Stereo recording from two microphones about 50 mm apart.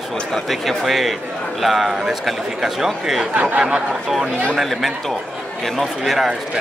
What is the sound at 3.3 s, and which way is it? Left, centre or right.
Speech, right.